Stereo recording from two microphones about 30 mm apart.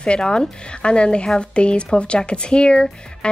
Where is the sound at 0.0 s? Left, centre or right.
Left.